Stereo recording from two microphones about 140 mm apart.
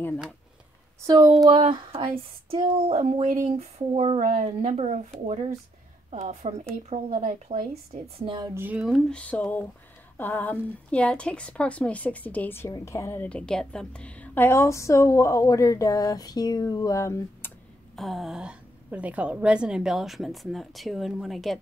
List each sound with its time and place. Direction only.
1.0 s speech: 25° right (ahead or behind)
2.5 s a woman's voice: 45° right (ahead or behind)
7.2 s speech: 65° right (ahead or behind)
8.2 s speech: 35° right (ahead or behind)
8.5 s speech: 15° right (ahead or behind)
8.8 s a woman's voice: centre (ahead or behind)
9.2 s a woman's voice: 10° left (ahead or behind)
13.3 s a woman's voice: 5° left (ahead or behind)
17.9 s a woman's voice: centre (ahead or behind)